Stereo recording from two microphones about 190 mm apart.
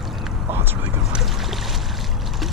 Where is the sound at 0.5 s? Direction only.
10° right (ahead or behind).